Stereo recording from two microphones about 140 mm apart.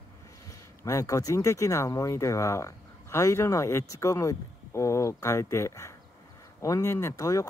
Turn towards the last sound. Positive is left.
turn(degrees=25)  # may be behind; listen again after turning